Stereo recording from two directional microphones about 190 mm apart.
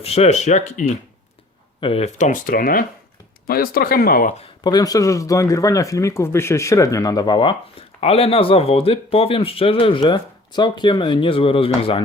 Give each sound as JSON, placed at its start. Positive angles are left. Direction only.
{"t": 0.0, "sound": "speech", "side_deg": 30}
{"t": 4.4, "sound": "speech", "side_deg": 20}